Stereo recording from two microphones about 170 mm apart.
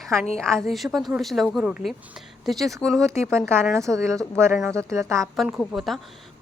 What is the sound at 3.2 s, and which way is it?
Speech, 15° right (ahead or behind).